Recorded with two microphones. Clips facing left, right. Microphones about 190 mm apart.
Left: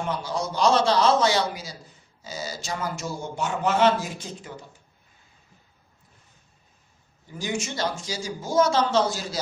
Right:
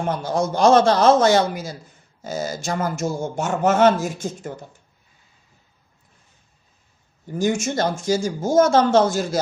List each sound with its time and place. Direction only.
0.0 s a man's voice: 50° right (ahead or behind)
7.2 s a man's voice: 45° right (ahead or behind)